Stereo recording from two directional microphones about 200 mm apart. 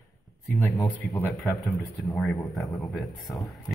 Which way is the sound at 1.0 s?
Centre (ahead or behind).